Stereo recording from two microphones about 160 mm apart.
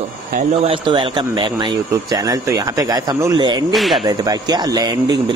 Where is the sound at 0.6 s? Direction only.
35° right (ahead or behind).